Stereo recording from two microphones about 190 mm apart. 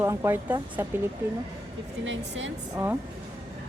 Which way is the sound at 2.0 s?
80° right.